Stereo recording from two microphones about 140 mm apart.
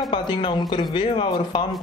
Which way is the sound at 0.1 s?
35° left (ahead or behind).